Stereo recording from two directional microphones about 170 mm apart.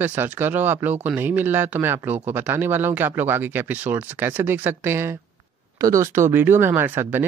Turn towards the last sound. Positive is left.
turn(degrees=-10)  # may be behind; listen again after turning